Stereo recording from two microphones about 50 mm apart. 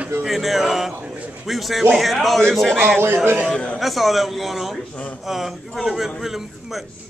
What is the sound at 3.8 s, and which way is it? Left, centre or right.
A man's voice, centre.